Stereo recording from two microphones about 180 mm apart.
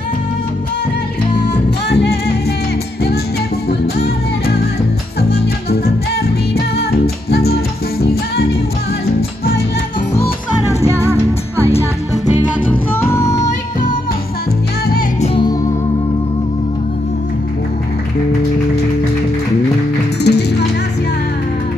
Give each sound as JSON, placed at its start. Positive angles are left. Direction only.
{"t": 1.9, "sound": "music", "side_deg": 65}
{"t": 5.3, "sound": "music", "side_deg": 60}
{"t": 13.0, "sound": "music", "side_deg": 15}
{"t": 15.2, "sound": "music", "side_deg": 30}
{"t": 20.2, "sound": "music", "side_deg": 70}